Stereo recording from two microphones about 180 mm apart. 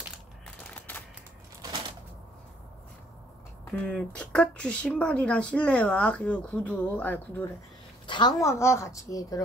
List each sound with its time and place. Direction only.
0.7 s a sound: 10° left (ahead or behind)
3.7 s speech: 5° left (ahead or behind)
8.1 s a woman's voice: 25° left (ahead or behind)